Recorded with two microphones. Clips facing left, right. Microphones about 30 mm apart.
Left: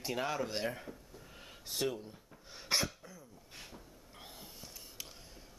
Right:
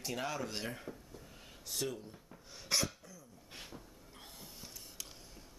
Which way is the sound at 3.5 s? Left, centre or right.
Centre.